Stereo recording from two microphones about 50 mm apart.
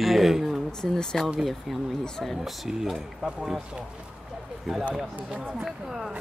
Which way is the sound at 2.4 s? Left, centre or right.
Centre.